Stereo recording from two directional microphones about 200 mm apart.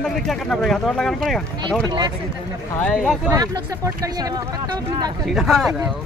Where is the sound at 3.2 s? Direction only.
15° right (ahead or behind).